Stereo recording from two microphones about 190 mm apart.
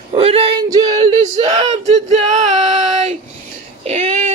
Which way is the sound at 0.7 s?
20° right (ahead or behind).